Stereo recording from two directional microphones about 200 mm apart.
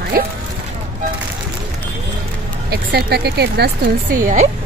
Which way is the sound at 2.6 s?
50° right (ahead or behind).